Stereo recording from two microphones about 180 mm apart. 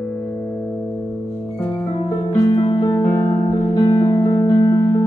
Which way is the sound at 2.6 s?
25° left (ahead or behind).